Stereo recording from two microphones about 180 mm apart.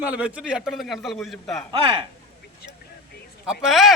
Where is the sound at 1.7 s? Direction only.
30° right (ahead or behind).